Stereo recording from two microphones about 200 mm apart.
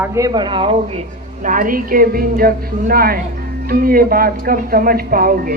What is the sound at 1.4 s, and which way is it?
A woman's voice, 40° right (ahead or behind).